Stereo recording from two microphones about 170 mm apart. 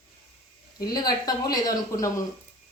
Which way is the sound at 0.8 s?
25° left (ahead or behind).